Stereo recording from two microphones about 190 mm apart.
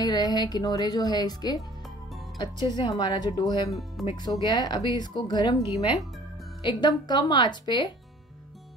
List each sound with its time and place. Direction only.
0.0 s speech: 20° left (ahead or behind)